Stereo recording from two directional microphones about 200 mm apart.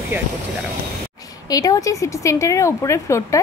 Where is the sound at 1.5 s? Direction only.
20° left (ahead or behind).